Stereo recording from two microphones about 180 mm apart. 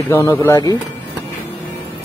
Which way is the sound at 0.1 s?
15° left (ahead or behind).